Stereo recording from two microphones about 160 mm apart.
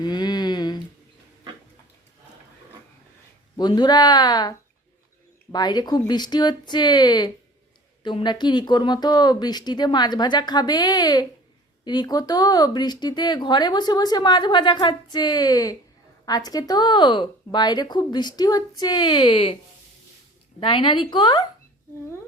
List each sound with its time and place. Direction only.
0.0 s a sound: 25° left (ahead or behind)
3.6 s speech: 25° left (ahead or behind)
20.6 s speech: 30° left (ahead or behind)